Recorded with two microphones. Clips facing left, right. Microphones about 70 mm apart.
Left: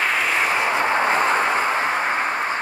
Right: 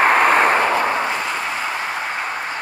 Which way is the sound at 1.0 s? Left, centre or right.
Left.